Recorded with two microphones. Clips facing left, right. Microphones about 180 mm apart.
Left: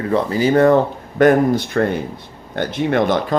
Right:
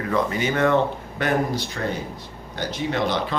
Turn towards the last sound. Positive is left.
turn(degrees=50)  # may be behind; listen again after turning